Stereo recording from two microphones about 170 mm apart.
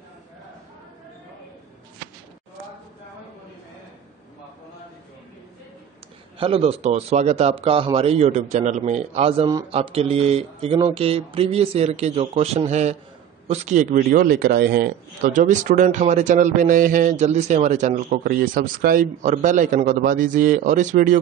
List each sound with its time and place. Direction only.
6.3 s a man's voice: 35° right (ahead or behind); by 19.0 s 60° right (ahead or behind)
19.2 s a man's voice: 50° right (ahead or behind)